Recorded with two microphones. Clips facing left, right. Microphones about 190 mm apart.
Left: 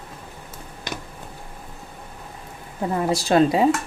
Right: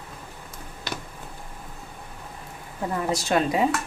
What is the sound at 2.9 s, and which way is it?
Speech, 30° left (ahead or behind).